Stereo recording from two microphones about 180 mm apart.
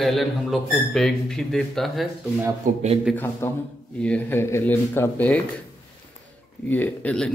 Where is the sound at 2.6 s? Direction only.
45° right (ahead or behind).